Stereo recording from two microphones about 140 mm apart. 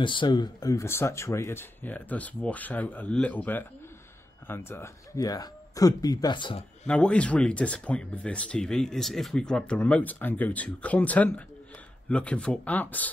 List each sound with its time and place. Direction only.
0.0 s speech: 35° left (ahead or behind)
6.9 s speech: 10° left (ahead or behind)